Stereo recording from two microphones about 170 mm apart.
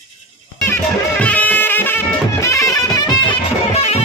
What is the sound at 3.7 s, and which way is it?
Music, 40° left (ahead or behind).